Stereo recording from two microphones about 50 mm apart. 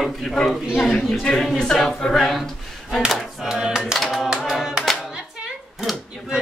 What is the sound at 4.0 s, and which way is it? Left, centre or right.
Singing, centre.